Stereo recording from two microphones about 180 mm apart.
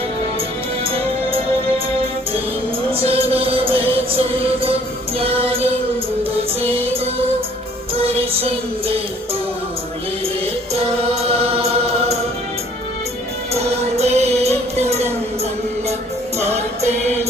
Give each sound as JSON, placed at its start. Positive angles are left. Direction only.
{"t": 0.9, "sound": "music", "side_deg": -30}
{"t": 2.9, "sound": "music", "side_deg": -30}
{"t": 10.4, "sound": "music", "side_deg": -35}
{"t": 13.5, "sound": "music", "side_deg": -35}
{"t": 16.4, "sound": "music", "side_deg": -35}